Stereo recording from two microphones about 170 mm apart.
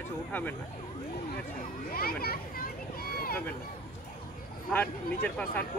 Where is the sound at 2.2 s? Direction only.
60° left (ahead or behind).